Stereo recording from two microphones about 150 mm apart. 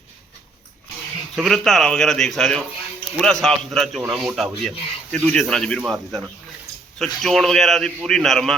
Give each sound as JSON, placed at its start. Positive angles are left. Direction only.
{"t": 1.5, "sound": "a man's voice", "side_deg": 0}